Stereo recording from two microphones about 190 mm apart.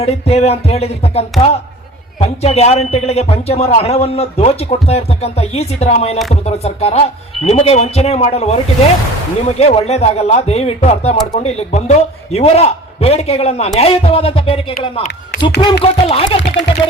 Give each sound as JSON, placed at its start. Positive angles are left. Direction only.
{"t": 0.0, "sound": "a man's voice", "side_deg": 35}